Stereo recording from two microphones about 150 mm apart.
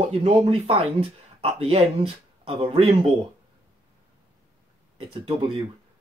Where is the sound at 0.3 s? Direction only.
40° right (ahead or behind).